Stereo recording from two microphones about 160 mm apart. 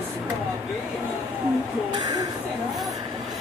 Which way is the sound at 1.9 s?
20° right (ahead or behind).